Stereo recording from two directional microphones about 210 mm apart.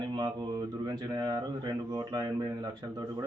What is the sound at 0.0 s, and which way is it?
Speech, 20° right (ahead or behind).